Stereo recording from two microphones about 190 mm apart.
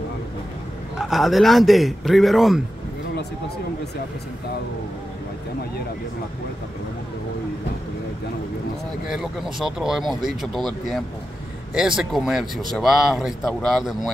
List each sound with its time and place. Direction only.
0.9 s speech: centre (ahead or behind)
9.1 s speech: centre (ahead or behind)